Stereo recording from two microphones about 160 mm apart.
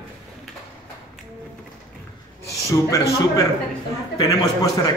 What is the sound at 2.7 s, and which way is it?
A man's voice, 20° left (ahead or behind).